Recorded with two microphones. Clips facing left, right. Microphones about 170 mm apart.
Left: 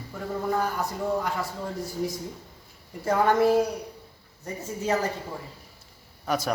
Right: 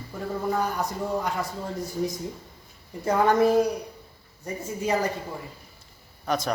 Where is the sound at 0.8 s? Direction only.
20° right (ahead or behind).